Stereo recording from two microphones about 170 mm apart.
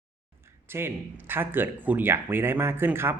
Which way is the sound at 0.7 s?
15° right (ahead or behind).